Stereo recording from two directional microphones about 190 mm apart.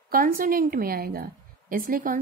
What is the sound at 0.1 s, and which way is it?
Speech, 50° right (ahead or behind).